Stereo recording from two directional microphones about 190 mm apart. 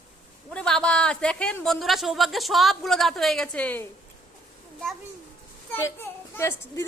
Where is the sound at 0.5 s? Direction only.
5° left (ahead or behind).